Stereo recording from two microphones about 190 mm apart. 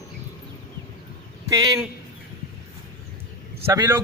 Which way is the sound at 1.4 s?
15° right (ahead or behind).